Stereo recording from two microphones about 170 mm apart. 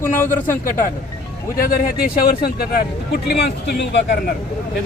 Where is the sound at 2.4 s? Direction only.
65° left (ahead or behind); by 4.3 s 80° left.